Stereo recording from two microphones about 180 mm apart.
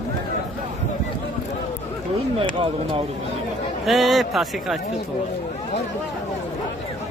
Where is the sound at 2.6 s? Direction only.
30° right (ahead or behind).